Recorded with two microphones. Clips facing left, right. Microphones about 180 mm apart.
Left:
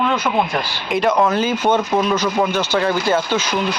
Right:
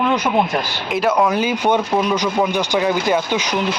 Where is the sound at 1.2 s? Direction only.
15° right (ahead or behind).